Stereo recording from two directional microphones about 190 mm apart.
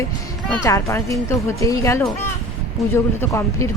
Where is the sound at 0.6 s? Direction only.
15° left (ahead or behind).